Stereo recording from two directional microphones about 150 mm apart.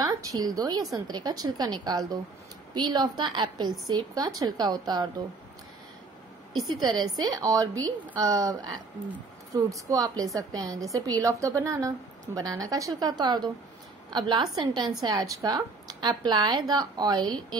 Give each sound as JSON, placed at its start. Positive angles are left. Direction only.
{"t": 0.0, "sound": "a woman's voice", "side_deg": -25}
{"t": 6.5, "sound": "a woman's voice", "side_deg": -25}